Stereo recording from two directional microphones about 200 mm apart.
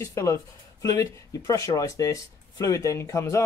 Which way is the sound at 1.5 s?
15° left (ahead or behind).